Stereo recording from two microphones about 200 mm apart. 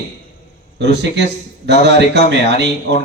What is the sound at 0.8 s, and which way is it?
A man's voice, 60° right (ahead or behind).